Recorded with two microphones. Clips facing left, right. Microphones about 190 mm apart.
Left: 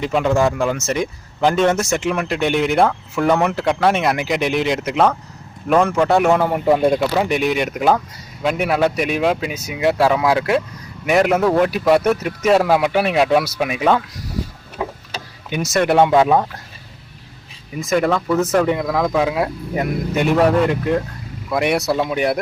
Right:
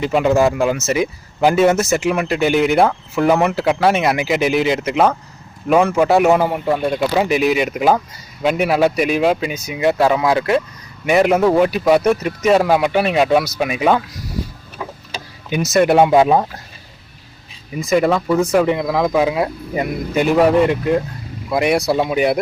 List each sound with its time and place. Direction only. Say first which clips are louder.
0.0 s speech: right 2 dB; 5° right (ahead or behind)
6.7 s speech: left 7 dB; 15° left (ahead or behind)
6.9 s speech: right 1 dB; 5° right (ahead or behind)
15.4 s speech: right 3 dB; 5° right (ahead or behind)
17.7 s speech: right 2 dB; centre (ahead or behind)